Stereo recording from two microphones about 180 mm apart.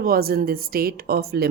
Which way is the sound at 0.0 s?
55° right (ahead or behind).